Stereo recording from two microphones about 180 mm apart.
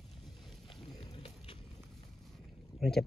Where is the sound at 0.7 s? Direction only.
30° left (ahead or behind).